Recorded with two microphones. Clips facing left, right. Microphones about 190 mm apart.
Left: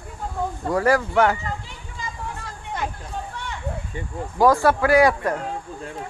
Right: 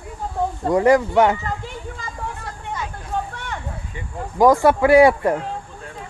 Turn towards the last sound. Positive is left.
turn(degrees=-25)  # may be behind; listen again after turning